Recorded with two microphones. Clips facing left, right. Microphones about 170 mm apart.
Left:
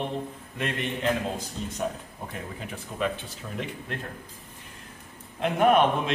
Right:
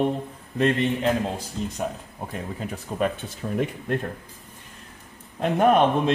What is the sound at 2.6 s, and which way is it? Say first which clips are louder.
A man's voice: right 5 dB; 45° right (ahead or behind).